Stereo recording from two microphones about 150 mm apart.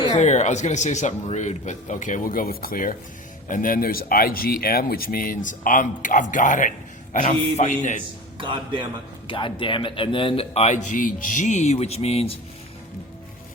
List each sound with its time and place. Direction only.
0.2 s a man's voice: 50° left (ahead or behind)
7.3 s a man's voice: 50° left (ahead or behind)
9.2 s a man's voice: 35° left (ahead or behind)